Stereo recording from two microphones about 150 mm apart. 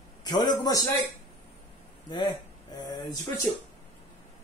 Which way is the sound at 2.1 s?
30° left (ahead or behind).